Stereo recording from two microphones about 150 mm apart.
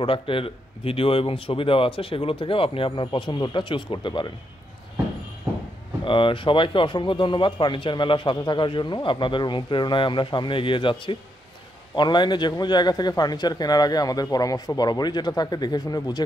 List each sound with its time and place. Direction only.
0.0 s a man's voice: 35° left (ahead or behind)
6.0 s a man's voice: 35° left (ahead or behind)